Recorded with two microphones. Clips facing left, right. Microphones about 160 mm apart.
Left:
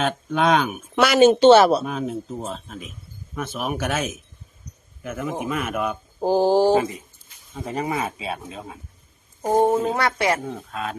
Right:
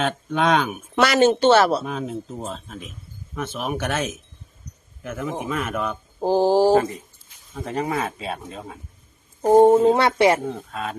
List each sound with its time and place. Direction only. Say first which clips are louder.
0.0 s speech: left 1 dB; centre (ahead or behind)
1.3 s speech: left 4 dB; 15° left (ahead or behind)
1.8 s speech: left 1 dB; centre (ahead or behind)
9.5 s speech: right 6 dB; 15° right (ahead or behind)
10.7 s speech: even; centre (ahead or behind)